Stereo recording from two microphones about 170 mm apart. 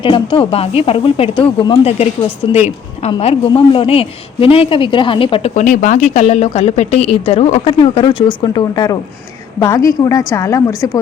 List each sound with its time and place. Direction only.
0.0 s speech: 30° left (ahead or behind)
5.5 s a woman's voice: 50° left (ahead or behind); by 11.0 s 20° left (ahead or behind)